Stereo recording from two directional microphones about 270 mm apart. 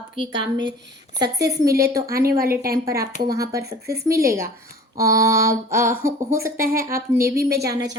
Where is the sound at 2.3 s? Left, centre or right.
Right.